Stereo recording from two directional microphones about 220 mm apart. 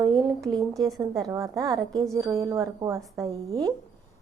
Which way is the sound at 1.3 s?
15° right (ahead or behind).